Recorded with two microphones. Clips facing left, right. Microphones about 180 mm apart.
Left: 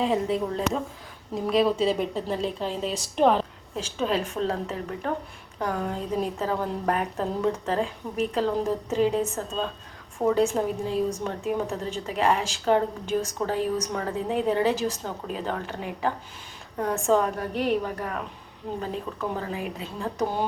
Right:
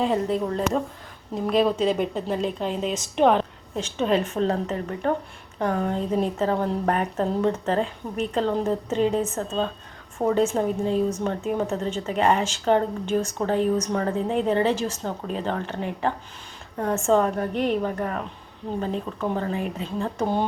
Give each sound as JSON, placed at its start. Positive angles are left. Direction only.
{"t": 0.0, "sound": "a woman's voice", "side_deg": 0}